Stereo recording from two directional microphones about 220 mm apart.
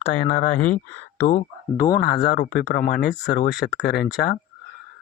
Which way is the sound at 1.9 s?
45° left (ahead or behind).